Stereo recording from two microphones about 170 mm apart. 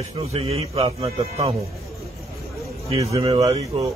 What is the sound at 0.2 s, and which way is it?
Speech, 35° right (ahead or behind).